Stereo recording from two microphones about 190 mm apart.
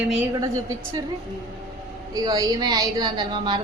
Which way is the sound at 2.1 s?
20° right (ahead or behind).